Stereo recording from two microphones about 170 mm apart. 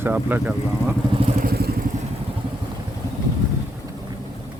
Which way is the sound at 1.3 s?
60° right (ahead or behind).